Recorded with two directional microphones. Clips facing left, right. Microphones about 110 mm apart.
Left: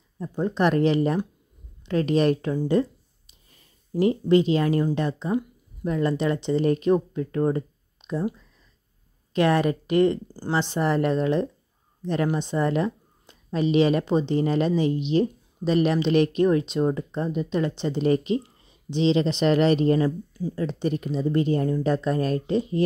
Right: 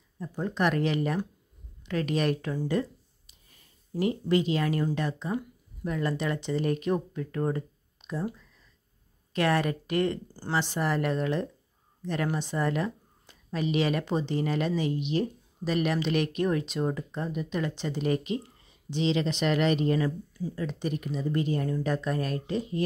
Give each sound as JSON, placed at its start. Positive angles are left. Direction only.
{"t": 0.2, "sound": "speech", "side_deg": 25}
{"t": 9.3, "sound": "speech", "side_deg": 20}